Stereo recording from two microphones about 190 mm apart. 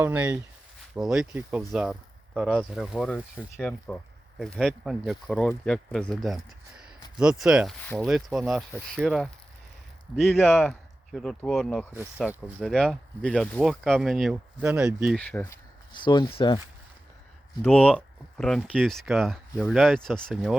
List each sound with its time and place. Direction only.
0.0 s speech: 10° right (ahead or behind)
10.4 s speech: 10° left (ahead or behind); by 12.6 s 10° right (ahead or behind)
12.6 s speech: centre (ahead or behind)
15.1 s speech: 5° left (ahead or behind)
15.9 s speech: 25° left (ahead or behind)
17.9 s a sound: 5° left (ahead or behind)
18.7 s speech: centre (ahead or behind)